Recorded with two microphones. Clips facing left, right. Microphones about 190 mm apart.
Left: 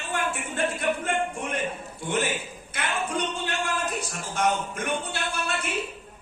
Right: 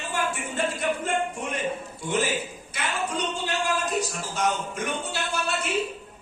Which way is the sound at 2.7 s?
60° left (ahead or behind).